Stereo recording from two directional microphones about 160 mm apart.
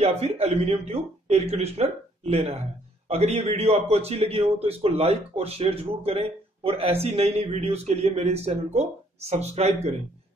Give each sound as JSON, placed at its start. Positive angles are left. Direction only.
{"t": 0.0, "sound": "speech", "side_deg": -40}